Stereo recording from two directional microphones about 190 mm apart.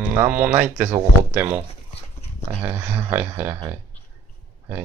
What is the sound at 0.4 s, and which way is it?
Speech, 10° right (ahead or behind).